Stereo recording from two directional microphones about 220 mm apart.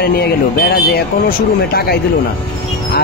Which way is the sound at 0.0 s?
45° left (ahead or behind).